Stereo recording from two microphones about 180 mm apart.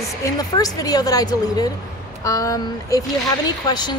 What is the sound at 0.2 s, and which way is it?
Speech, 20° left (ahead or behind).